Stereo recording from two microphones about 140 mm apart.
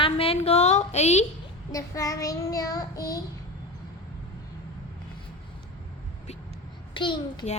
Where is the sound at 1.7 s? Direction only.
25° left (ahead or behind).